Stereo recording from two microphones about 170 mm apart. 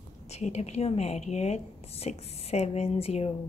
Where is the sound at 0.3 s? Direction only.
40° left (ahead or behind).